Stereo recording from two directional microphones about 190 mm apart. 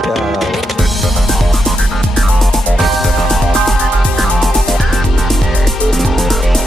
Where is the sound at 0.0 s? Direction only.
Centre (ahead or behind).